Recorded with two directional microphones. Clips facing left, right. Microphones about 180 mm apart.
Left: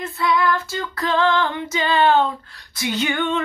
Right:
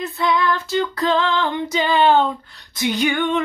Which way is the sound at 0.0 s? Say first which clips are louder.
Even; 20° right (ahead or behind).